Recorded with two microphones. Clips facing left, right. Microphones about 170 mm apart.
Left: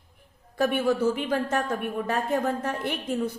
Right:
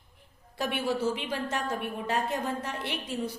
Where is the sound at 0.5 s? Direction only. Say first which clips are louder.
Left 6 dB; 50° left (ahead or behind).